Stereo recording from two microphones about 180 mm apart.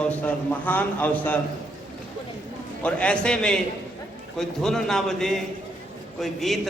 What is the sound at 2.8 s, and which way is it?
A man's voice, 5° left (ahead or behind).